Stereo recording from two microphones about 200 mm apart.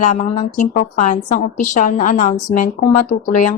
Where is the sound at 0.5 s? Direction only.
55° left (ahead or behind).